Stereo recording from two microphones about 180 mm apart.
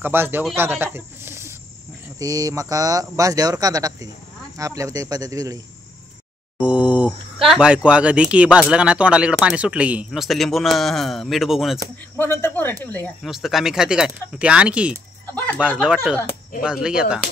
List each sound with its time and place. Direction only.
0.0 s speech: 10° right (ahead or behind)
6.6 s speech: 5° right (ahead or behind)
12.2 s speech: 10° left (ahead or behind)
13.2 s speech: centre (ahead or behind)
15.3 s a sound: 10° left (ahead or behind)
15.8 s speech: 5° right (ahead or behind)